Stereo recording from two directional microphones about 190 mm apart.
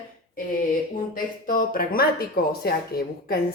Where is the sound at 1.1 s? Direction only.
50° left (ahead or behind).